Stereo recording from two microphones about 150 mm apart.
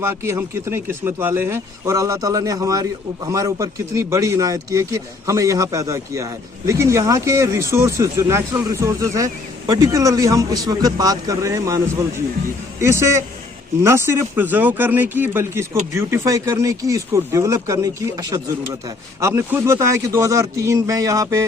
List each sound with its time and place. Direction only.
0.1 s speech: 20° right (ahead or behind)
12.8 s speech: 20° right (ahead or behind)